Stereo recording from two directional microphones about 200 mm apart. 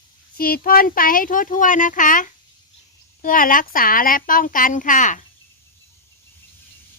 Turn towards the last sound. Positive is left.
turn(degrees=40)  # may be behind; listen again after turning